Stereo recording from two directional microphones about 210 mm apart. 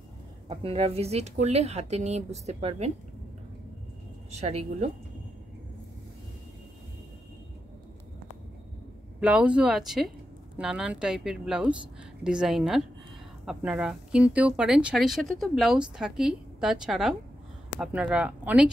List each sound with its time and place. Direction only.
0.5 s speech: 25° right (ahead or behind)
4.3 s speech: 30° right (ahead or behind)
9.2 s speech: 5° right (ahead or behind)